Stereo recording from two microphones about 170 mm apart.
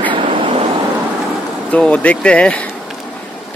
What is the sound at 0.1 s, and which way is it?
Vehicle, 30° right (ahead or behind).